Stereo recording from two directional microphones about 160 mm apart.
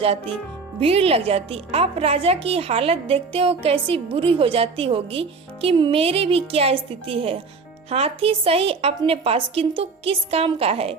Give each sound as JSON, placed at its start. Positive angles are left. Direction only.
{"t": 0.8, "sound": "a woman's voice", "side_deg": -35}